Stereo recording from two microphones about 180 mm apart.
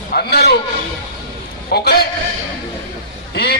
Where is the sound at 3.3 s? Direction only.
65° left (ahead or behind).